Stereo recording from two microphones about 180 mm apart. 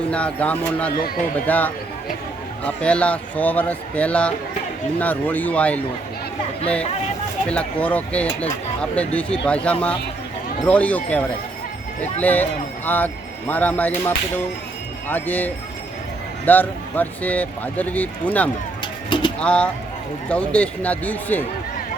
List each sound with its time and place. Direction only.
0.1 s speech: 5° left (ahead or behind)
7.4 s speech: 5° left (ahead or behind)
10.7 s speech: 10° left (ahead or behind)
15.0 s speech: 10° left (ahead or behind)
18.8 s bird: 25° left (ahead or behind)
19.4 s speech: 5° left (ahead or behind)